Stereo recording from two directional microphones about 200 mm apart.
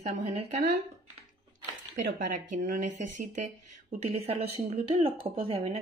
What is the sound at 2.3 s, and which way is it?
Speech, 40° right (ahead or behind).